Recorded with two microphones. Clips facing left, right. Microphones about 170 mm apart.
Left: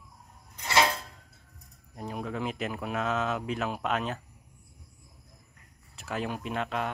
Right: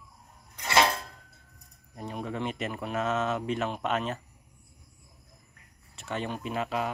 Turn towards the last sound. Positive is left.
turn(degrees=-5)  # may be behind; listen again after turning